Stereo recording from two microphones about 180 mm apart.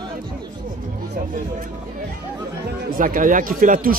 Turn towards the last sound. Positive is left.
turn(degrees=-50)  # may be behind; listen again after turning